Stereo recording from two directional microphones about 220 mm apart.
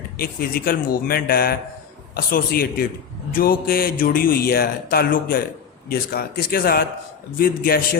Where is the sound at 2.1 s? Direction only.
40° left (ahead or behind).